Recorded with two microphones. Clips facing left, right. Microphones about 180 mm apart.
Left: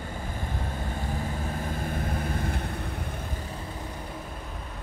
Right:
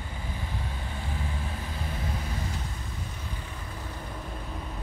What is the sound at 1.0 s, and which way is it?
Vehicle, 45° left (ahead or behind).